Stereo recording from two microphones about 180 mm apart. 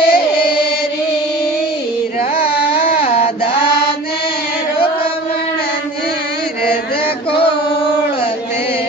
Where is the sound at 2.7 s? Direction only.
35° left (ahead or behind).